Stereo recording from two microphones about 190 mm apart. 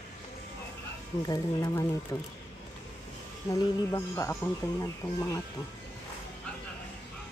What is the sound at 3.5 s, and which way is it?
Speech, 15° left (ahead or behind).